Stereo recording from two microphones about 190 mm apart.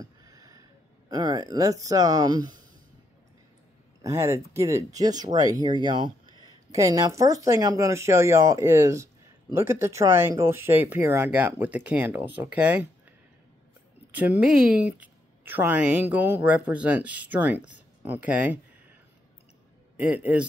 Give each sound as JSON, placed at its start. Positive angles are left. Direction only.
{"t": 0.0, "sound": "a sound", "side_deg": -20}
{"t": 4.0, "sound": "speech", "side_deg": -15}
{"t": 14.1, "sound": "speech", "side_deg": -10}
{"t": 20.0, "sound": "speech", "side_deg": -10}